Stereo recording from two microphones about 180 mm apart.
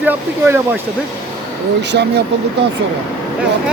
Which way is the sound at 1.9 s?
70° right (ahead or behind).